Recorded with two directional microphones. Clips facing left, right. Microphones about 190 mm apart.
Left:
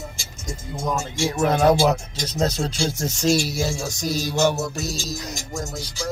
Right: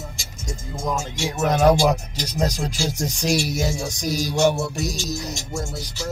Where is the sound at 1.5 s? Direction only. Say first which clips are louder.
Right 1 dB; 15° right (ahead or behind).